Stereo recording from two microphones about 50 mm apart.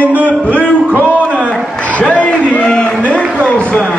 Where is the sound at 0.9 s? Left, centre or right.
Right.